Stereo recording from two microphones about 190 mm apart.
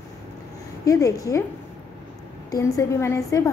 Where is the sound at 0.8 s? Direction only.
20° left (ahead or behind).